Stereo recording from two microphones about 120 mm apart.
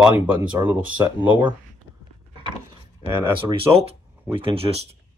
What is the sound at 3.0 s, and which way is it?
Speech, 50° right (ahead or behind).